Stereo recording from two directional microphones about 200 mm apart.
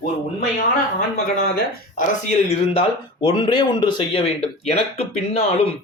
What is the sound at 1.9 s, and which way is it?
Speech, 35° left (ahead or behind).